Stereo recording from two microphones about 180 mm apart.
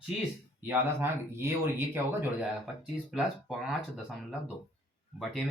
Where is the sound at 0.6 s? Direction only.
10° right (ahead or behind).